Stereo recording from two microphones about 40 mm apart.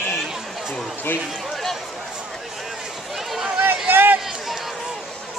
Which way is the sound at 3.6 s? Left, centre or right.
Right.